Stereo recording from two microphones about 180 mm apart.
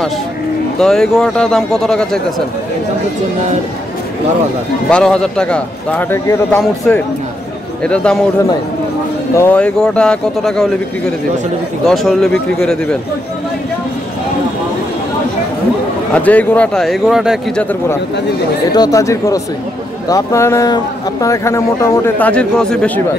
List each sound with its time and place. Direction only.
0.7 s speech: 5° left (ahead or behind)
4.8 s a man's voice: 5° left (ahead or behind)
6.6 s speech: centre (ahead or behind)
9.3 s speech: 10° left (ahead or behind)
16.1 s speech: 10° left (ahead or behind)
18.7 s a man's voice: 20° left (ahead or behind)